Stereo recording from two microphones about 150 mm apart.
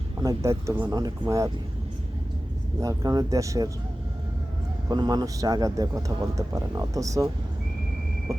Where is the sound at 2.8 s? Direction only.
25° right (ahead or behind).